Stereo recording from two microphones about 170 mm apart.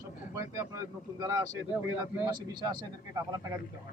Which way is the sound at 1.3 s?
20° right (ahead or behind).